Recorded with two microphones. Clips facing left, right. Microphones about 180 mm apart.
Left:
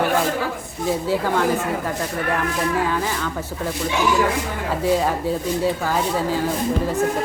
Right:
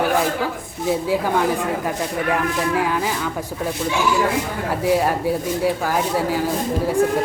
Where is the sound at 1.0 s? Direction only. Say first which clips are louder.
Even; 15° right (ahead or behind).